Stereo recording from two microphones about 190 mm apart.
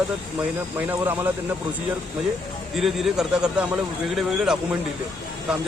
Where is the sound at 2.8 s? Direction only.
Centre (ahead or behind).